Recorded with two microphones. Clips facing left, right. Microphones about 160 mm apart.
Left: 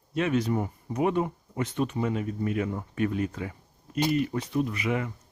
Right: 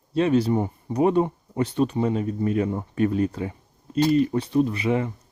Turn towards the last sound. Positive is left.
turn(degrees=-30)  # may be behind; listen again after turning